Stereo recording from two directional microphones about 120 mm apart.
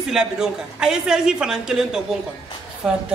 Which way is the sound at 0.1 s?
5° right (ahead or behind).